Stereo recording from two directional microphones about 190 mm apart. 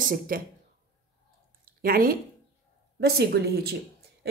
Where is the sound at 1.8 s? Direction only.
50° right (ahead or behind).